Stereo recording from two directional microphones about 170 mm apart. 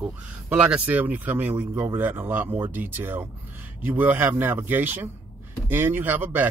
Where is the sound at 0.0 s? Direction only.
10° right (ahead or behind).